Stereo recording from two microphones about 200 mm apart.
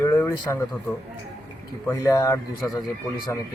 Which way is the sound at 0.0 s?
15° left (ahead or behind).